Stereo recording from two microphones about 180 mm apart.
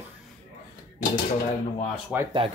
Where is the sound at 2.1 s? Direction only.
5° right (ahead or behind).